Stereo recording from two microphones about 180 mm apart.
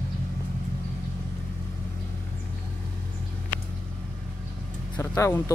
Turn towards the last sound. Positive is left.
turn(degrees=15)  # may be behind; listen again after turning